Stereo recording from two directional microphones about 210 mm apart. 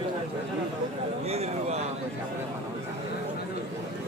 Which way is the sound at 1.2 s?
30° right (ahead or behind).